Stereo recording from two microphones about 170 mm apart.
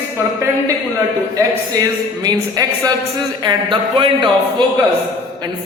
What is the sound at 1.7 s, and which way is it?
A man's voice, 20° right (ahead or behind).